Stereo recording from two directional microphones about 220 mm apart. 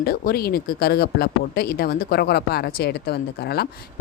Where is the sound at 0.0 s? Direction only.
45° left (ahead or behind).